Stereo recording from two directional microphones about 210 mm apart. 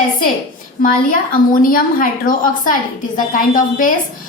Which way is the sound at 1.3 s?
40° left (ahead or behind).